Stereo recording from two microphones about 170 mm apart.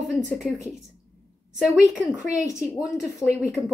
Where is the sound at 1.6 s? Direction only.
5° right (ahead or behind).